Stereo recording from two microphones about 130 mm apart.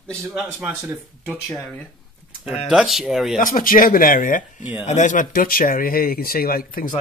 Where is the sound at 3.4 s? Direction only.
90° left.